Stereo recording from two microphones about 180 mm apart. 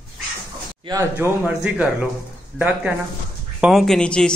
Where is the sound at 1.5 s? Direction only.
5° right (ahead or behind).